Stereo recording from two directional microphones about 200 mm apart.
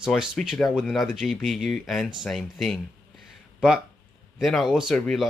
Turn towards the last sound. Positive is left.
turn(degrees=0)  # may be behind; listen again after turning